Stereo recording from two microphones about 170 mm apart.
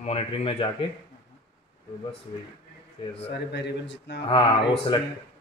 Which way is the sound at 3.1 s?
90° left.